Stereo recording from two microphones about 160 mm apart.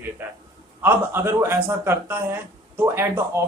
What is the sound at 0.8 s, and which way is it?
Speech, 15° right (ahead or behind).